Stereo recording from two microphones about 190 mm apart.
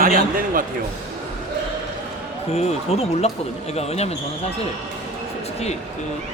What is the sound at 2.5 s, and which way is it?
Speech, 35° left (ahead or behind).